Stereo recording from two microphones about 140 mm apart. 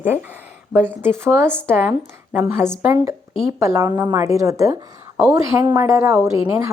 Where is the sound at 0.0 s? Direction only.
15° right (ahead or behind).